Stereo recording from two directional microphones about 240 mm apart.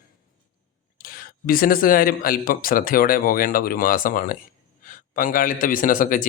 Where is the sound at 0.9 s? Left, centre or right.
Left.